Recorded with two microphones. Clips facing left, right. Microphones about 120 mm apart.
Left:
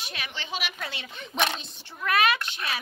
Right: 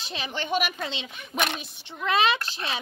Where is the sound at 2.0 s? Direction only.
25° right (ahead or behind).